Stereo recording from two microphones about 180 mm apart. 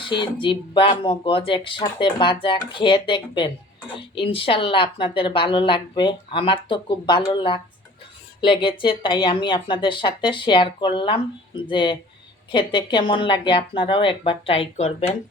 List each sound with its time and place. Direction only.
0.0 s speech: 25° left (ahead or behind)